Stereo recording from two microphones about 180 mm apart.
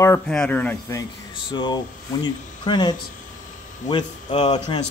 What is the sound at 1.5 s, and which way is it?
Speech, 25° left (ahead or behind).